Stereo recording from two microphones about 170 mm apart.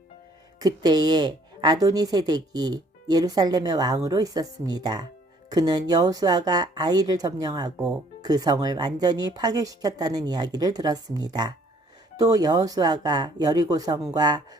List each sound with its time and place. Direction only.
0.6 s a woman's voice: 25° right (ahead or behind)